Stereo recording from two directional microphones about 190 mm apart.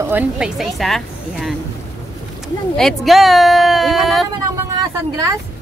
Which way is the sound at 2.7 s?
Centre (ahead or behind).